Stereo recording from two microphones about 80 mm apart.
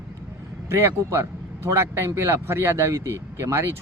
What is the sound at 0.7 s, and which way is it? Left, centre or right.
A man's voice, right.